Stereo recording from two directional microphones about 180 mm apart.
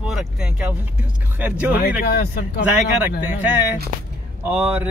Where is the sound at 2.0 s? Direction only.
60° left (ahead or behind).